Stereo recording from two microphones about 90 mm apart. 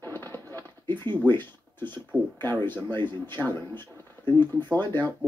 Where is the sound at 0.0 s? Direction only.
25° left (ahead or behind).